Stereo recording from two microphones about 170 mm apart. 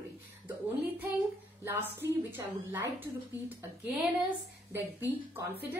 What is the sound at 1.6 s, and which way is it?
A woman's voice, 10° right (ahead or behind).